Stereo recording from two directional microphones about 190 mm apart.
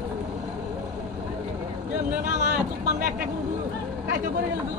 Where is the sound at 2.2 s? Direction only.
40° right (ahead or behind).